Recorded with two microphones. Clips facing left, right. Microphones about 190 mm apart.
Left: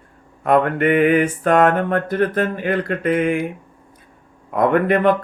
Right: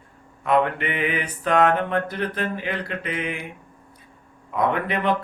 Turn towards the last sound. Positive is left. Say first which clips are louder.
# left 8 dB
turn(degrees=50)  # may be behind; listen again after turning